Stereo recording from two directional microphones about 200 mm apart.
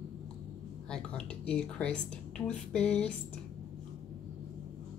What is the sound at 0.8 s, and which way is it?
A woman's voice, 5° left (ahead or behind).